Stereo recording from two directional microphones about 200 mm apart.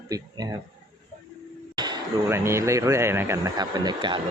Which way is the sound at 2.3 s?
15° right (ahead or behind).